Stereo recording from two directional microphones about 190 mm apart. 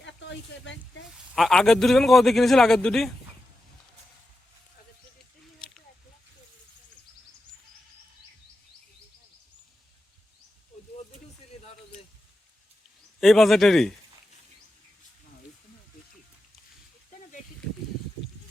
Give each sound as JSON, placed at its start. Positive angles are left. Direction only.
{"t": 0.0, "sound": "speech", "side_deg": 70}
{"t": 1.1, "sound": "a man's voice", "side_deg": 0}
{"t": 13.1, "sound": "a man's voice", "side_deg": 0}